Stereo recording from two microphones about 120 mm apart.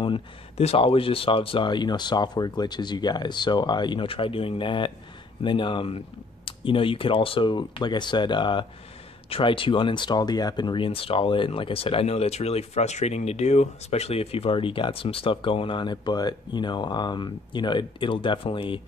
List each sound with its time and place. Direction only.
0.0 s speech: 55° left (ahead or behind)